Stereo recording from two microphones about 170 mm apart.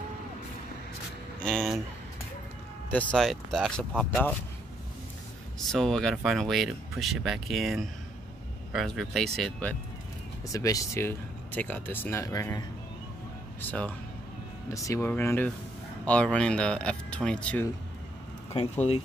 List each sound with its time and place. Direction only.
1.4 s speech: 5° left (ahead or behind)
2.9 s speech: 10° left (ahead or behind)
5.7 s speech: centre (ahead or behind)
10.5 s speech: 20° left (ahead or behind)
18.5 s speech: 40° left (ahead or behind)